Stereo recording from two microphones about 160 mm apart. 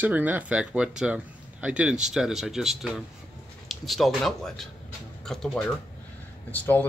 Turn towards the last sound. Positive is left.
turn(degrees=10)  # may be behind; listen again after turning